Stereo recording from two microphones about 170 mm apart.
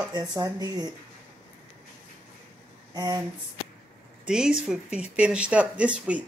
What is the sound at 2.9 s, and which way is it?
Speech, 20° right (ahead or behind).